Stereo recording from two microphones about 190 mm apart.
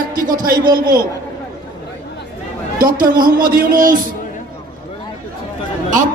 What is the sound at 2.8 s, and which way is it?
Speech, 50° right (ahead or behind).